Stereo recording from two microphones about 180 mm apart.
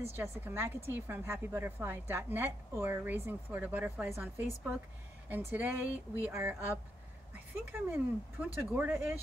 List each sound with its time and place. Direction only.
0.1 s a woman's voice: 10° right (ahead or behind)